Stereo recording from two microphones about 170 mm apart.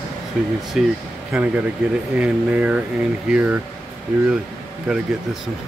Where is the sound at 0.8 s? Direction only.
5° right (ahead or behind).